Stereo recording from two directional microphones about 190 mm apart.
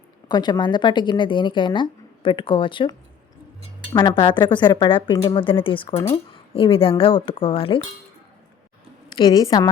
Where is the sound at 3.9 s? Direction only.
25° left (ahead or behind).